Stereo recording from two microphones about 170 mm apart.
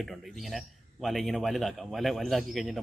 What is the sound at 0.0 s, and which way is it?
A man's voice, centre (ahead or behind).